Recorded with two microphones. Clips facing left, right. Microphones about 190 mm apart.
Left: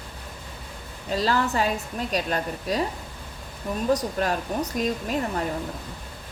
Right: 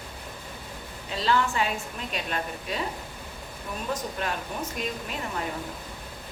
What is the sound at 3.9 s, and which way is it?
Speech, 40° left (ahead or behind).